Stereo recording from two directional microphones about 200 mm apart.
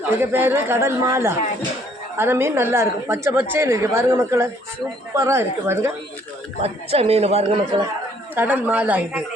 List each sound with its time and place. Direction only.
0.2 s a woman's voice: 10° right (ahead or behind)
6.6 s a man's voice: 30° right (ahead or behind)
8.4 s a woman's voice: 10° right (ahead or behind)